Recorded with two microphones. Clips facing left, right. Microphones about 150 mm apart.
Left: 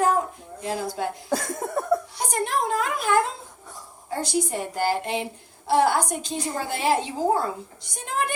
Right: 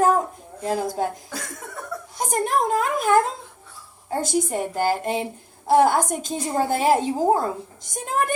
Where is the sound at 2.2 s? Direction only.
45° right (ahead or behind).